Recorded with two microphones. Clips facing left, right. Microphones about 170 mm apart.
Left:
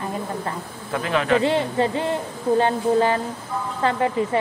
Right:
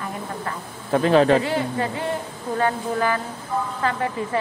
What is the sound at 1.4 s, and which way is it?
Speech, 25° left (ahead or behind).